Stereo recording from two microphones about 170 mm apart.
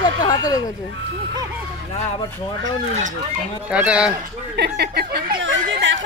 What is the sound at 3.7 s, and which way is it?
Speech, 5° right (ahead or behind).